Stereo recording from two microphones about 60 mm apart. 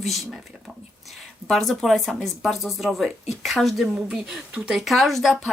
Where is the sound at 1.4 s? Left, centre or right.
Centre.